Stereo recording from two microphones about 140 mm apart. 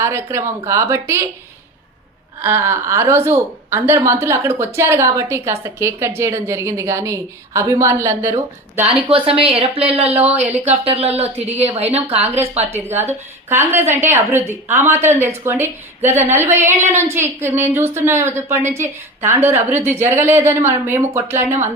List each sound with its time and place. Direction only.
0.0 s a woman's voice: 20° right (ahead or behind)
2.4 s a woman's voice: 15° right (ahead or behind)
9.0 s a woman's voice: 40° right (ahead or behind)
12.9 s a woman's voice: 15° right (ahead or behind)